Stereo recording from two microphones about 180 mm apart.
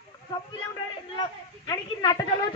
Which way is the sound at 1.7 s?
25° left (ahead or behind).